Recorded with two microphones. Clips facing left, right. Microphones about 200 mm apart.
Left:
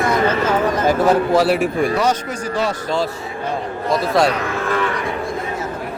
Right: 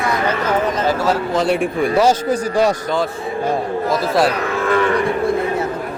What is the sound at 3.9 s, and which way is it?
Speech, centre (ahead or behind).